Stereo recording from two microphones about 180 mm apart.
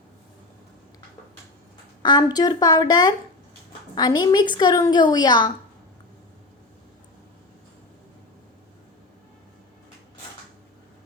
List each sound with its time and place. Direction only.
2.0 s a woman's voice: 25° left (ahead or behind)